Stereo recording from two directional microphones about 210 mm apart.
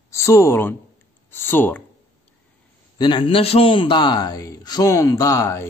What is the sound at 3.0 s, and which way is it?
A man's voice, 25° left (ahead or behind).